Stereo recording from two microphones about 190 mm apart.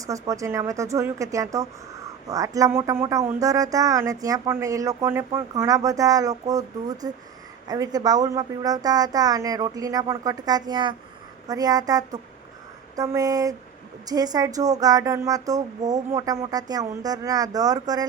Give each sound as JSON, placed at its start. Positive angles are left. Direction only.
{"t": 0.0, "sound": "a woman's voice", "side_deg": -15}